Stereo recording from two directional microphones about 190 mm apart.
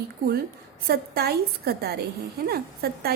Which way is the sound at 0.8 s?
55° right (ahead or behind).